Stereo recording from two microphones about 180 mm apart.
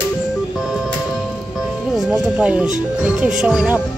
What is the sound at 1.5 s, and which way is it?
Speech, centre (ahead or behind).